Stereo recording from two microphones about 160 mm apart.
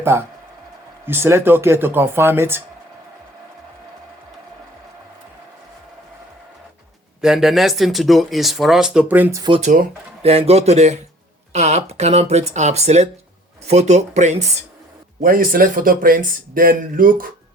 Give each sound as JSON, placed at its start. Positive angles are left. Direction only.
{"t": 0.0, "sound": "speech", "side_deg": -15}
{"t": 7.2, "sound": "speech", "side_deg": -5}
{"t": 9.6, "sound": "a man's voice", "side_deg": -50}
{"t": 15.2, "sound": "speech", "side_deg": -60}